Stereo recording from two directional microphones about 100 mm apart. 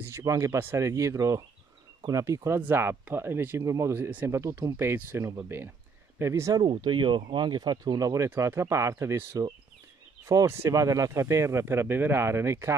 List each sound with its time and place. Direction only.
0.0 s speech: 30° right (ahead or behind)
6.8 s speech: 50° right (ahead or behind); by 12.7 s 25° right (ahead or behind)